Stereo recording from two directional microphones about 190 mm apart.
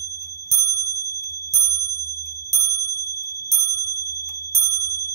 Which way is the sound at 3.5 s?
15° right (ahead or behind).